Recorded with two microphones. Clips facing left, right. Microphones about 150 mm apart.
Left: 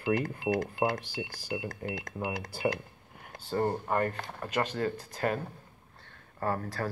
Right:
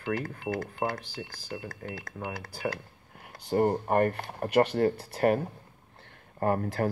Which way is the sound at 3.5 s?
25° right (ahead or behind).